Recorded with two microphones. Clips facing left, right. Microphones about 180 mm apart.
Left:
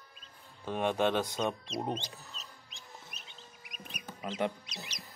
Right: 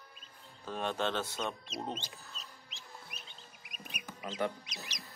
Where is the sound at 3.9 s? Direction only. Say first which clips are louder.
Left 1 dB; 55° right (ahead or behind).